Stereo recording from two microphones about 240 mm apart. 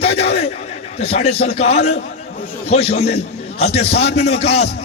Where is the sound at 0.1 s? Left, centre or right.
Left.